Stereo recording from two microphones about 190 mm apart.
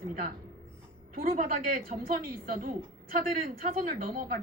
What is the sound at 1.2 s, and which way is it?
Speech, 45° right (ahead or behind).